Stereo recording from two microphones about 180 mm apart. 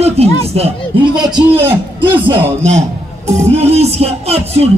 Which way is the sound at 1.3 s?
10° right (ahead or behind).